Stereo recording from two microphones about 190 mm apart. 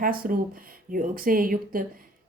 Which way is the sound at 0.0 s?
45° right (ahead or behind).